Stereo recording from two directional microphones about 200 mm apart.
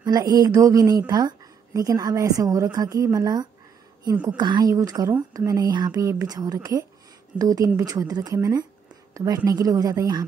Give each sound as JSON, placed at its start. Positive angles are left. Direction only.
{"t": 0.0, "sound": "a woman's voice", "side_deg": -20}